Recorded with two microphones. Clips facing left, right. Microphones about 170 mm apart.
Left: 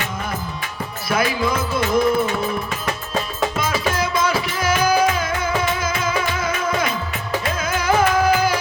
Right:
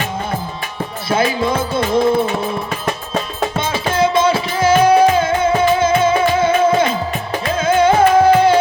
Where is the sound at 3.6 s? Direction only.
25° right (ahead or behind).